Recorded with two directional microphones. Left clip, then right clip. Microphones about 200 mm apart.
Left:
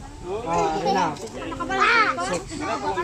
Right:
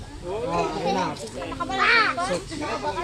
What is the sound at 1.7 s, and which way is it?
Speech, 40° left (ahead or behind).